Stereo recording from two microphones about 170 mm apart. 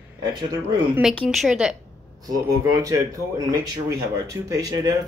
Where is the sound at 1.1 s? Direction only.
5° left (ahead or behind).